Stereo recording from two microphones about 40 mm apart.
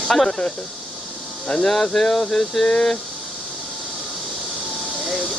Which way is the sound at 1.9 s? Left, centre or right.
Centre.